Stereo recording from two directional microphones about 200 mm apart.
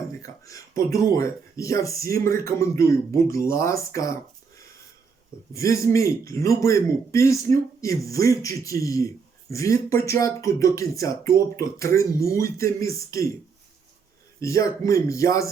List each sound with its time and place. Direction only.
0.2 s a man's voice: 15° left (ahead or behind)
5.5 s a man's voice: 15° left (ahead or behind)
14.4 s a man's voice: 15° left (ahead or behind)